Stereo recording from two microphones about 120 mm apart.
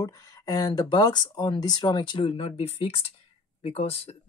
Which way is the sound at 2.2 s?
60° left (ahead or behind).